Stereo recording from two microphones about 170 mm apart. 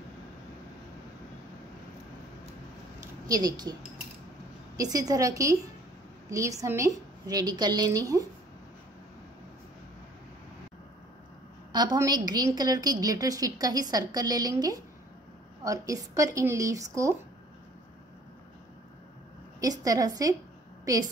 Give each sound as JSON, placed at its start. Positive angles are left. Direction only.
{"t": 3.0, "sound": "a sound", "side_deg": -20}
{"t": 4.7, "sound": "a woman's voice", "side_deg": -20}
{"t": 11.7, "sound": "a woman's voice", "side_deg": -25}
{"t": 19.6, "sound": "a woman's voice", "side_deg": -20}